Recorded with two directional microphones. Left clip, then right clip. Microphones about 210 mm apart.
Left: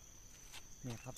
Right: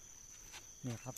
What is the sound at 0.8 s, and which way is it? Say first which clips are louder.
Speech: right 3 dB; 35° right (ahead or behind).